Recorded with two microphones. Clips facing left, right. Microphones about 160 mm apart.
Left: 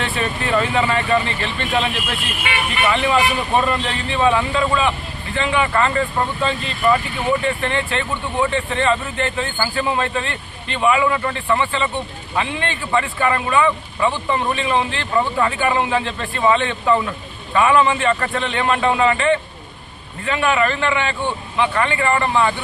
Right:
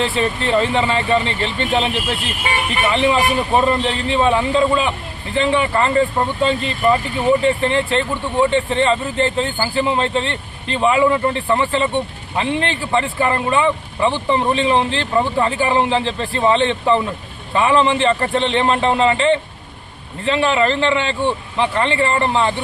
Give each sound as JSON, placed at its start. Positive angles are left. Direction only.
{"t": 0.0, "sound": "speech", "side_deg": -30}